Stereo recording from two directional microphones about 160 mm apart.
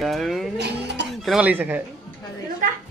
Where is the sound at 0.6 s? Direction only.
90° right.